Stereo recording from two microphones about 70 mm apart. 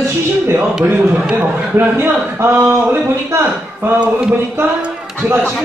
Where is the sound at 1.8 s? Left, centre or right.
Right.